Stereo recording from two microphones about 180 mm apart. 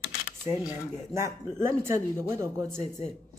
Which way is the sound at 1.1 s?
15° right (ahead or behind).